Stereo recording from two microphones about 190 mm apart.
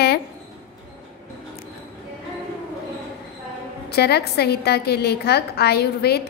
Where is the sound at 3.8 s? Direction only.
55° left (ahead or behind).